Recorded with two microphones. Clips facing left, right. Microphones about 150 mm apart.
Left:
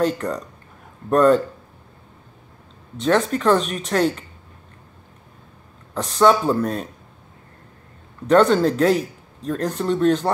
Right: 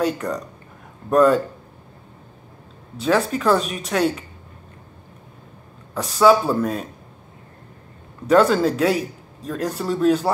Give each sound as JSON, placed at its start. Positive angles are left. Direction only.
{"t": 0.0, "sound": "a man's voice", "side_deg": -5}
{"t": 3.0, "sound": "a man's voice", "side_deg": -5}
{"t": 5.9, "sound": "a man's voice", "side_deg": -5}
{"t": 8.3, "sound": "a man's voice", "side_deg": -5}